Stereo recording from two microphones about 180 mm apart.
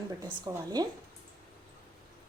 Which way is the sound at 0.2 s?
20° right (ahead or behind).